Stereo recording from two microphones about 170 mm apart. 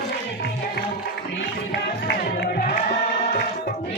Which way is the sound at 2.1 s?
65° left (ahead or behind).